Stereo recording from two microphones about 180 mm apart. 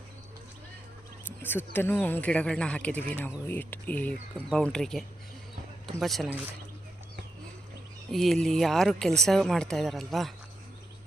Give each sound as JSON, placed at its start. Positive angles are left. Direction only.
{"t": 1.4, "sound": "speech", "side_deg": 10}
{"t": 8.1, "sound": "speech", "side_deg": 0}